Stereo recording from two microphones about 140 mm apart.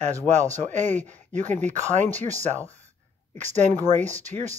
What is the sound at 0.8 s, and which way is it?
Speech, 15° left (ahead or behind).